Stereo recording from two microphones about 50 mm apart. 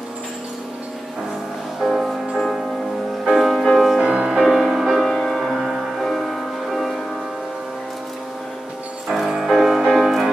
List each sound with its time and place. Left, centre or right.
1.8 s music: centre
4.0 s music: centre
4.5 s music: centre
5.1 s music: centre
9.5 s music: centre